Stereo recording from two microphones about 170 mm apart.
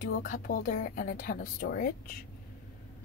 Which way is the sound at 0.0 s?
55° left (ahead or behind).